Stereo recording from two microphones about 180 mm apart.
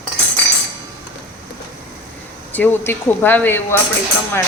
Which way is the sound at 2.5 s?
10° left (ahead or behind).